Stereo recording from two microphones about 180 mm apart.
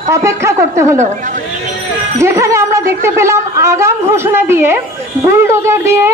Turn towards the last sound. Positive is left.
turn(degrees=-15)  # may be behind; listen again after turning